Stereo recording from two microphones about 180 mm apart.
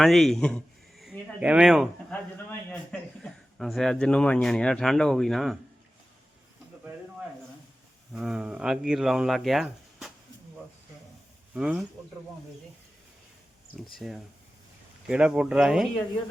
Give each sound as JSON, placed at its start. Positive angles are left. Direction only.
{"t": 0.0, "sound": "speech", "side_deg": 0}
{"t": 8.1, "sound": "speech", "side_deg": -5}
{"t": 11.5, "sound": "speech", "side_deg": -5}
{"t": 13.9, "sound": "speech", "side_deg": 0}